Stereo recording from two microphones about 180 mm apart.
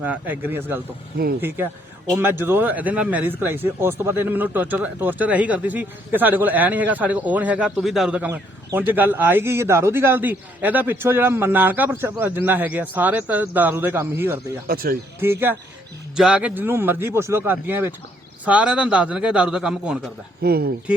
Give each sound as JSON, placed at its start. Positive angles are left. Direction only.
{"t": 0.0, "sound": "speech", "side_deg": -10}
{"t": 14.7, "sound": "speech", "side_deg": -55}
{"t": 15.2, "sound": "a man's voice", "side_deg": -10}
{"t": 20.4, "sound": "speech", "side_deg": -60}